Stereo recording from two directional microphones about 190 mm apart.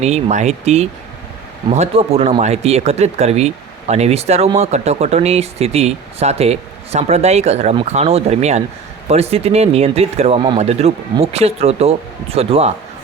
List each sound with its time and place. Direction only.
0.0 s speech: 35° right (ahead or behind)